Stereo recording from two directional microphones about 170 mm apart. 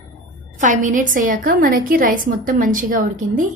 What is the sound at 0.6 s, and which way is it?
A woman's voice, 50° right (ahead or behind).